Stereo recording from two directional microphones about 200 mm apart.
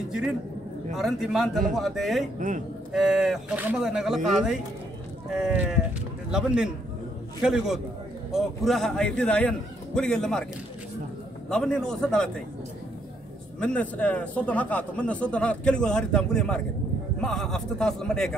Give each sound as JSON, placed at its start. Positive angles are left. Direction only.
{"t": 0.9, "sound": "a man's voice", "side_deg": 0}
{"t": 2.3, "sound": "a man's voice", "side_deg": -40}
{"t": 2.9, "sound": "a man's voice", "side_deg": 0}
{"t": 11.4, "sound": "a man's voice", "side_deg": 5}
{"t": 13.6, "sound": "a man's voice", "side_deg": 5}